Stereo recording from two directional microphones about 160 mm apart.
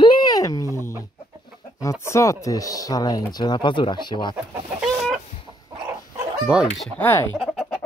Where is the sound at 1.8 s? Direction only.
20° left (ahead or behind).